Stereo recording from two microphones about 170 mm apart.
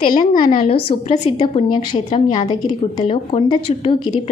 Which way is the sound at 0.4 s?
30° left (ahead or behind).